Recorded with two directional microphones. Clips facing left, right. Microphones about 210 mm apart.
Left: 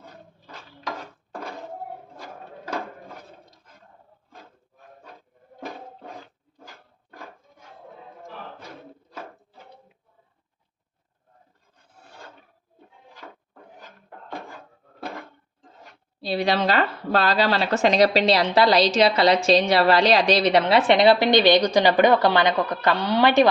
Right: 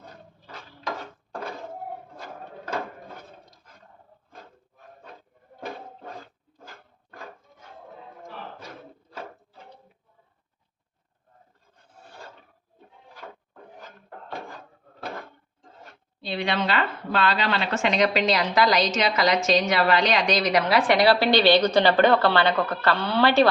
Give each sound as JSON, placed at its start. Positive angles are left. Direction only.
{"t": 16.2, "sound": "speech", "side_deg": 35}